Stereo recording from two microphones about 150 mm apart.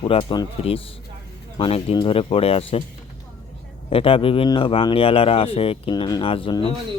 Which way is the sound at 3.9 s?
40° left (ahead or behind).